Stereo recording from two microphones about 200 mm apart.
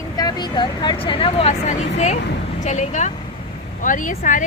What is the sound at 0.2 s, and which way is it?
Speech, 20° left (ahead or behind).